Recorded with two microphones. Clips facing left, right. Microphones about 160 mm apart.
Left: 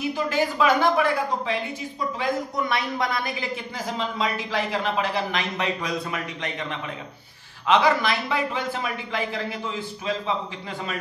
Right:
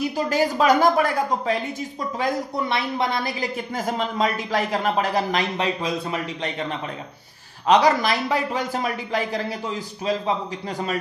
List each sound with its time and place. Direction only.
0.1 s a woman's voice: 40° right (ahead or behind)